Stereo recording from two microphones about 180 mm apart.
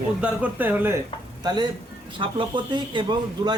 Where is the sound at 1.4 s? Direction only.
20° right (ahead or behind).